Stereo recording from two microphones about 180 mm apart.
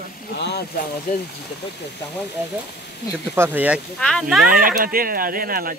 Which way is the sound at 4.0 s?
5° left (ahead or behind).